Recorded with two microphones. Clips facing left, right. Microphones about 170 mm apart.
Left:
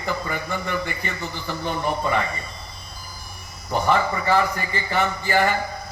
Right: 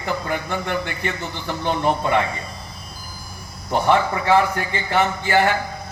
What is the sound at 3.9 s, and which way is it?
A man's voice, 65° right (ahead or behind).